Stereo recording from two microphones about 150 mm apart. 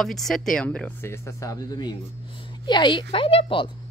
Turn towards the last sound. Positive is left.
turn(degrees=35)  # may be behind; listen again after turning